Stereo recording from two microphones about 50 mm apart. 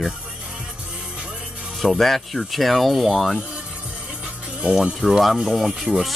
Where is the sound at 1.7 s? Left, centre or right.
Centre.